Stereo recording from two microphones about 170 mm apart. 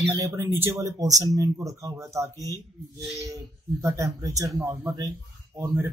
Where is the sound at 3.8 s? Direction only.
20° right (ahead or behind).